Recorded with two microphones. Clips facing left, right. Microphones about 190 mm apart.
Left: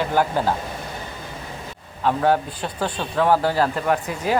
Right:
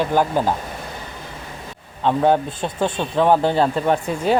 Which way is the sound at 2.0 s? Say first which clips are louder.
Right 2 dB; 20° right (ahead or behind).